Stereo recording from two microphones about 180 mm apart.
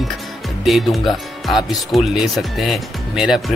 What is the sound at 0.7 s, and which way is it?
Speech, centre (ahead or behind).